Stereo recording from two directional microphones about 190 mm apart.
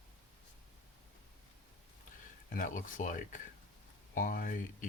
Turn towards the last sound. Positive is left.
turn(degrees=45)  # may be behind; listen again after turning